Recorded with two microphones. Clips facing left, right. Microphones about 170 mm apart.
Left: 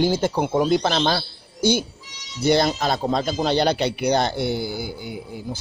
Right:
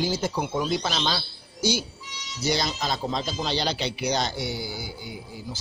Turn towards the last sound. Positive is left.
turn(degrees=55)  # may be behind; listen again after turning